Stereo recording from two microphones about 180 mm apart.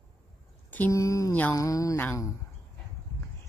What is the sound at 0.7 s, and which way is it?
A woman's voice, 15° left (ahead or behind).